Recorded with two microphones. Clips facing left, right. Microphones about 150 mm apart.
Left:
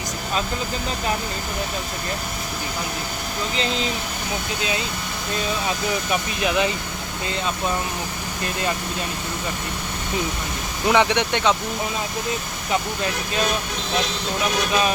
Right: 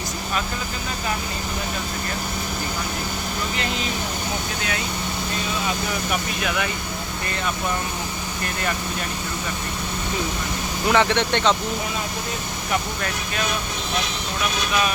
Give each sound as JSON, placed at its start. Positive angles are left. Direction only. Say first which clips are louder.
{"t": 6.4, "sound": "speech", "louder": "left 7 dB", "side_deg": 20}
{"t": 10.8, "sound": "speech", "louder": "left 1 dB", "side_deg": 15}